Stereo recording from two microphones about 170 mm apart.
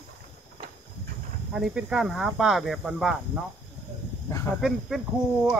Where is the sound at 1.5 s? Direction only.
5° right (ahead or behind).